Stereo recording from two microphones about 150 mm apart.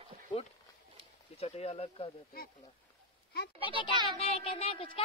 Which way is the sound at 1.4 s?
45° left (ahead or behind).